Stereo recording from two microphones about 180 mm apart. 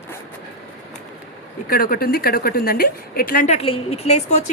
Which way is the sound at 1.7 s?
55° left (ahead or behind).